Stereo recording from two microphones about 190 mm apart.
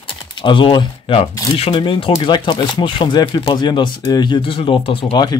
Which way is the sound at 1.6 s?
25° left (ahead or behind).